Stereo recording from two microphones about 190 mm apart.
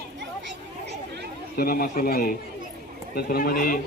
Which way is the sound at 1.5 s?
50° left (ahead or behind).